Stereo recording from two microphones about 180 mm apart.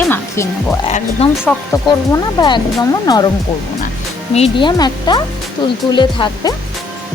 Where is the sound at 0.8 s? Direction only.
35° left (ahead or behind).